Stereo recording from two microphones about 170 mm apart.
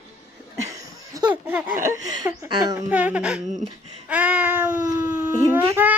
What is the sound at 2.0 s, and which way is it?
Speech, 20° right (ahead or behind).